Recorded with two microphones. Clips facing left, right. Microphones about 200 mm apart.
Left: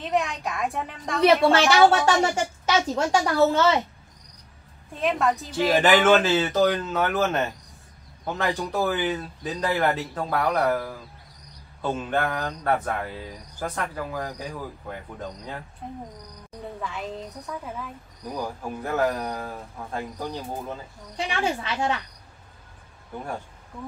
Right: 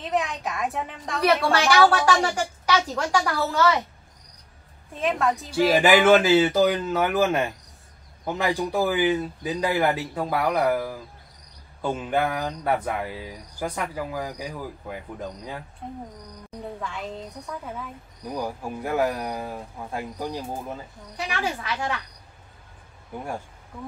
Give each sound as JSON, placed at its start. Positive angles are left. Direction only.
{"t": 0.0, "sound": "a woman's voice", "side_deg": 0}
{"t": 1.7, "sound": "a woman's voice", "side_deg": 25}
{"t": 4.9, "sound": "a woman's voice", "side_deg": 0}
{"t": 18.3, "sound": "speech", "side_deg": -10}
{"t": 21.3, "sound": "a woman's voice", "side_deg": 25}
{"t": 23.1, "sound": "speech", "side_deg": -10}